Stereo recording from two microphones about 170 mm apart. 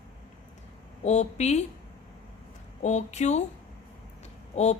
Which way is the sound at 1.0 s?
40° left (ahead or behind).